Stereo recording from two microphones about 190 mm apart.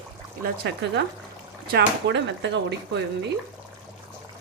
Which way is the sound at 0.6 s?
65° right (ahead or behind).